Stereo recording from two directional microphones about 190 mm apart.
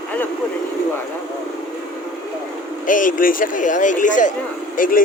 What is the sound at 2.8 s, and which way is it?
Speech, 45° left (ahead or behind).